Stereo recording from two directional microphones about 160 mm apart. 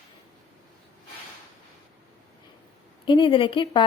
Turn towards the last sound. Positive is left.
turn(degrees=30)  # may be behind; listen again after turning